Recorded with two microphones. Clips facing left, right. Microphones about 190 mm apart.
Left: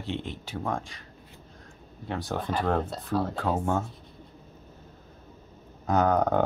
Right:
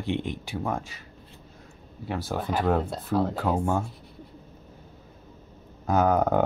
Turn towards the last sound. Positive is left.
turn(degrees=-5)  # may be behind; listen again after turning